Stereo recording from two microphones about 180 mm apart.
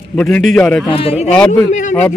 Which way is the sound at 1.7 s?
45° left (ahead or behind).